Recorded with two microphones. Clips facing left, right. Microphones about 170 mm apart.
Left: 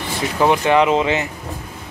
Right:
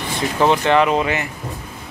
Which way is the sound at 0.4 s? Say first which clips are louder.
Even; 15° left (ahead or behind).